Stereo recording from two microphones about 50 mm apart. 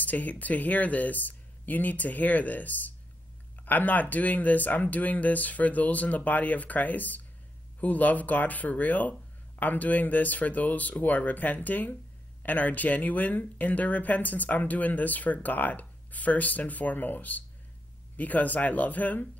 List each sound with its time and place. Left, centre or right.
0.0 s speech: left